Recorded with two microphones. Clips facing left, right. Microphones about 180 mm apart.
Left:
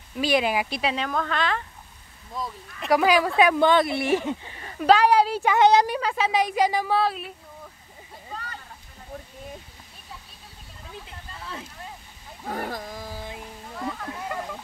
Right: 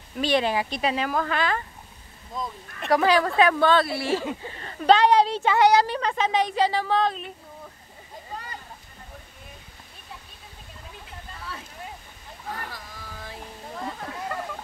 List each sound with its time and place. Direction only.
0.2 s speech: 10° left (ahead or behind)
5.9 s speech: 5° left (ahead or behind)
8.3 s a sound: 15° right (ahead or behind)
12.4 s wild animals: 50° left (ahead or behind)